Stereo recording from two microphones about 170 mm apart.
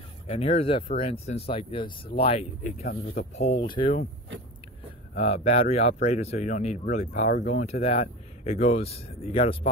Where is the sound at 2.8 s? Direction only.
70° left (ahead or behind).